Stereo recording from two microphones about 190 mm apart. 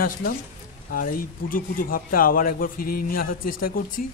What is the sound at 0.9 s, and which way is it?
Speech, 45° left (ahead or behind).